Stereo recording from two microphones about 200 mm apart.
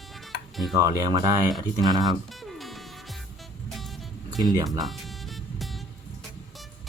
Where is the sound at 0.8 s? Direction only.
15° right (ahead or behind).